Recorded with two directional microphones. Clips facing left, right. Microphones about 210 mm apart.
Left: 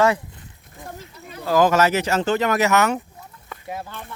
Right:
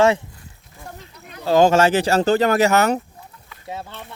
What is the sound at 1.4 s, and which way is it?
Speech, 30° right (ahead or behind).